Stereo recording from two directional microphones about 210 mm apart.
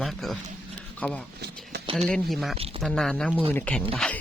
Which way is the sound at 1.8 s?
25° right (ahead or behind).